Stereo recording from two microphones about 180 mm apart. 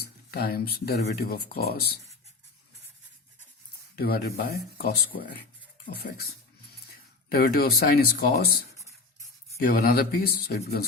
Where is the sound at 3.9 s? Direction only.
60° left (ahead or behind).